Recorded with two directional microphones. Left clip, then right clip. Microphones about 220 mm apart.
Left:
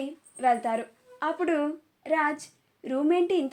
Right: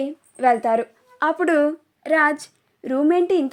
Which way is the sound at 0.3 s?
45° right (ahead or behind).